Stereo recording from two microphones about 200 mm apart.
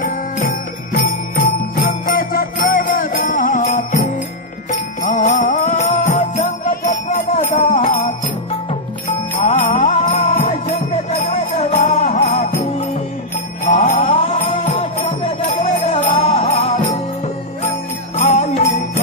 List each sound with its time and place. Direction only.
0.0 s jingle bell: 45° left (ahead or behind)
4.6 s music: 35° left (ahead or behind)
9.3 s music: 35° left (ahead or behind)
13.7 s music: 40° left (ahead or behind)
18.1 s jingle bell: 35° left (ahead or behind)